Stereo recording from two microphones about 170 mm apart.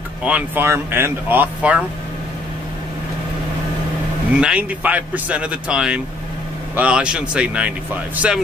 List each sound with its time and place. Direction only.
0.2 s speech: 10° right (ahead or behind)
4.4 s speech: 5° right (ahead or behind)